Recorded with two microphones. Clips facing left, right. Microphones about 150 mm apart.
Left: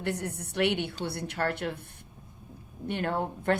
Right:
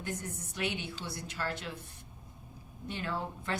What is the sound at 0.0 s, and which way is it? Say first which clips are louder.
A woman's voice: left 7 dB; 70° left (ahead or behind).